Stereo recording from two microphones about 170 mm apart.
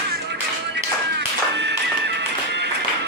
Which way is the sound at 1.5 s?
85° right.